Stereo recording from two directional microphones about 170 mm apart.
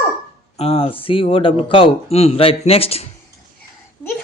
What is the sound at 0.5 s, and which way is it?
Speech, 40° left (ahead or behind).